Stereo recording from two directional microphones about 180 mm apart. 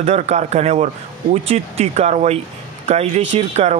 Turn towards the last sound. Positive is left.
turn(degrees=-40)  # may be behind; listen again after turning